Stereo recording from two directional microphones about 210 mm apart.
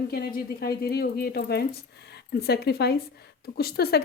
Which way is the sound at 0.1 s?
45° left (ahead or behind).